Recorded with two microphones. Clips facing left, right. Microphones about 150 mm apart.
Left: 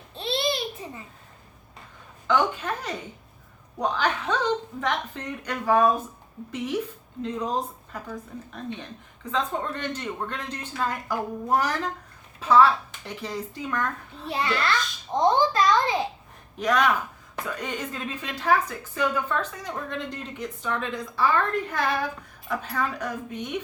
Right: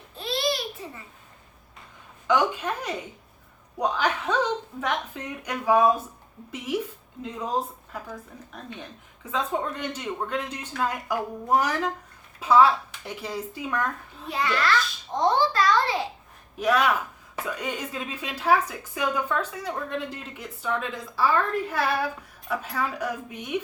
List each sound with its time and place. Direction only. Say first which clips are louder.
0.1 s babbling: even; 25° left (ahead or behind)
2.2 s a woman's voice: right 1 dB; 10° right (ahead or behind)
7.2 s a woman's voice: left 1 dB; 5° right (ahead or behind)
14.3 s a child's voice: right 1 dB; 30° left (ahead or behind)
16.6 s a woman's voice: even; 10° right (ahead or behind)